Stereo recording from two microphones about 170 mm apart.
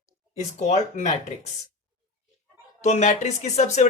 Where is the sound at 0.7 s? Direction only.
45° left (ahead or behind).